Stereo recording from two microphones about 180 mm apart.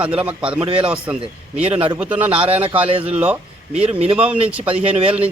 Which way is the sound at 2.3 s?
30° right (ahead or behind).